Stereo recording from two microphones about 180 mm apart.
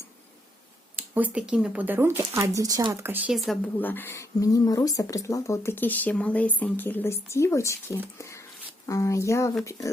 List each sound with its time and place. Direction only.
0.9 s speech: 10° right (ahead or behind)
3.3 s speech: centre (ahead or behind); by 9.9 s 15° left (ahead or behind)